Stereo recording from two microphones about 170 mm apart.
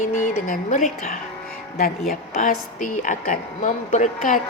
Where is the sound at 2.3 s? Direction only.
50° left (ahead or behind).